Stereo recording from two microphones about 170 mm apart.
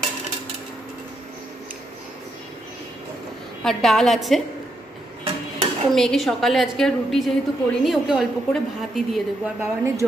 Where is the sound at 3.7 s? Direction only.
Centre (ahead or behind).